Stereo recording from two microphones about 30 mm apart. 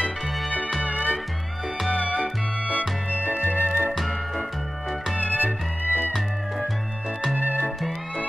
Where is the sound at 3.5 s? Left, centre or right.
Right.